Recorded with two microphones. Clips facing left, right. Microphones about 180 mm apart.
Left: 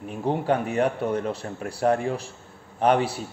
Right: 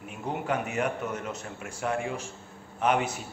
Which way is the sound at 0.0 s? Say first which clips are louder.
Left 7 dB; 35° left (ahead or behind).